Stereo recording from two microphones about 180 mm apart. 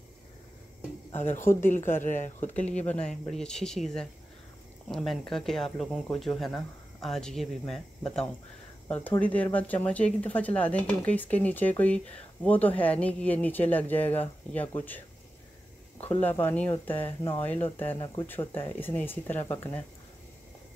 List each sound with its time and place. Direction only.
1.6 s speech: 45° left (ahead or behind)
2.6 s speech: 10° left (ahead or behind)
16.0 s speech: 10° left (ahead or behind)